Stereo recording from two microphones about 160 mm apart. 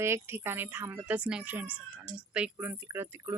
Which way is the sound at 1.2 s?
5° right (ahead or behind).